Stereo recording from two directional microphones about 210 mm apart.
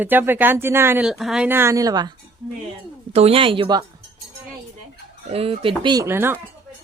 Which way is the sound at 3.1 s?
30° right (ahead or behind).